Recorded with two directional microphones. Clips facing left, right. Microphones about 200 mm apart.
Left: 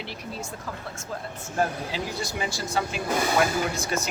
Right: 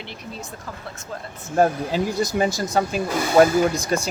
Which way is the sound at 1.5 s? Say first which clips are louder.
Right 8 dB; 45° right (ahead or behind).